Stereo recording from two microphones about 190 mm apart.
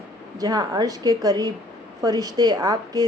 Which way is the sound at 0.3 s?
20° right (ahead or behind).